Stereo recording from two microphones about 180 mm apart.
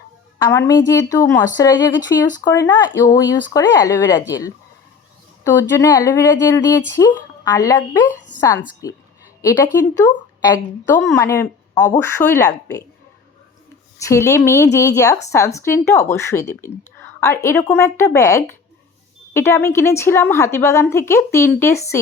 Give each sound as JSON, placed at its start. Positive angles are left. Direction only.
{"t": 0.4, "sound": "a woman's voice", "side_deg": 20}
{"t": 14.0, "sound": "a woman's voice", "side_deg": 15}